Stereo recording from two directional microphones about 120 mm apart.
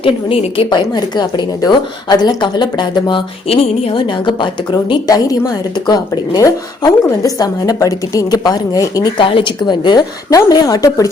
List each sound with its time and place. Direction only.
0.0 s a woman's voice: 50° left (ahead or behind); by 9.1 s 30° left (ahead or behind)
9.1 s a woman's voice: 45° left (ahead or behind); by 11.1 s 30° left (ahead or behind)